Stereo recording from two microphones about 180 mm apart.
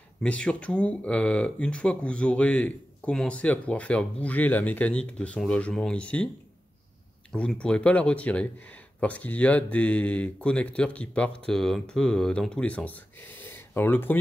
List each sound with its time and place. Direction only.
0.2 s speech: 5° left (ahead or behind)
7.3 s speech: 5° left (ahead or behind)